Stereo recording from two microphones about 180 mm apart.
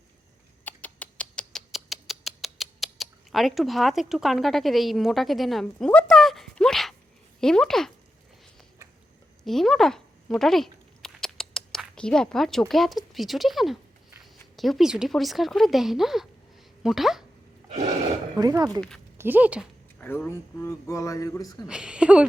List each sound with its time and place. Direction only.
0.6 s rodents: 10° left (ahead or behind)
7.4 s speech: 5° left (ahead or behind)
9.4 s a sound: centre (ahead or behind)
14.5 s speech: centre (ahead or behind)
18.3 s speech: 20° right (ahead or behind)
20.0 s speech: 10° left (ahead or behind)
21.7 s a woman's voice: 5° right (ahead or behind)